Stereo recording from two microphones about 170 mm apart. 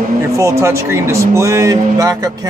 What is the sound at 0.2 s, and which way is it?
Speech, 15° right (ahead or behind).